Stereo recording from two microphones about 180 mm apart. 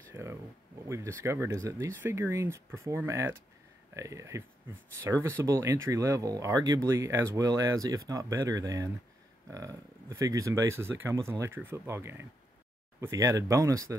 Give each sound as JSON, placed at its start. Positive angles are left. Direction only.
{"t": 0.1, "sound": "speech", "side_deg": -15}